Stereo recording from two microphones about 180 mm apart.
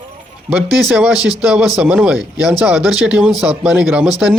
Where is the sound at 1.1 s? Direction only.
20° left (ahead or behind).